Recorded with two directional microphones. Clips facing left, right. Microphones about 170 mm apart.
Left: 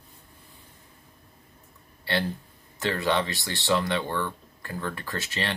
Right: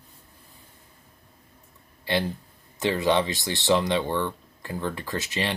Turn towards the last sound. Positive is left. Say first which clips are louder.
# right 3 dB
turn(degrees=-15)  # may be behind; listen again after turning